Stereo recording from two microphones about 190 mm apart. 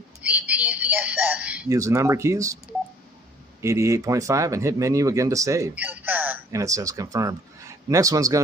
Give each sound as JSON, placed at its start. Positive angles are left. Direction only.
{"t": 0.2, "sound": "a sound", "side_deg": -5}
{"t": 1.8, "sound": "speech", "side_deg": -15}
{"t": 3.6, "sound": "speech", "side_deg": -15}